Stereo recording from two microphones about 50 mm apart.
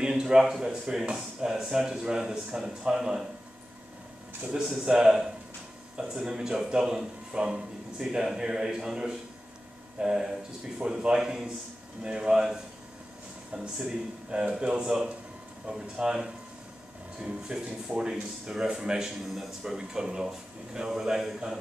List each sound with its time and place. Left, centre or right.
0.0 s a man's voice: centre
4.6 s speech: centre
18.8 s speech: centre